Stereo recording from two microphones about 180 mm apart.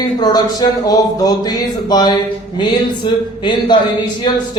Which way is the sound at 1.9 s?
20° left (ahead or behind).